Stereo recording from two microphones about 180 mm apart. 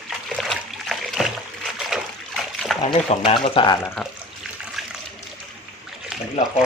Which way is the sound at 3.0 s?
30° left (ahead or behind).